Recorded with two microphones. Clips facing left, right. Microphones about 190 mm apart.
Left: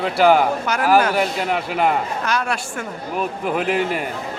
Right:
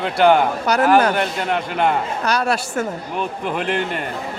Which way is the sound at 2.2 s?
35° right (ahead or behind).